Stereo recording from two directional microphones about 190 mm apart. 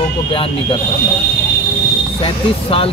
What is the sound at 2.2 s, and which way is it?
Speech, 30° left (ahead or behind).